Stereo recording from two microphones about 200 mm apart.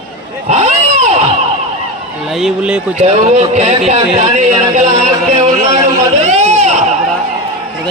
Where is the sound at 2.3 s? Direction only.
5° right (ahead or behind).